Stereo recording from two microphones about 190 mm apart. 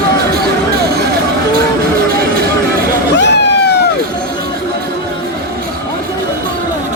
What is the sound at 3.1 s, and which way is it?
Vehicle, 65° left (ahead or behind).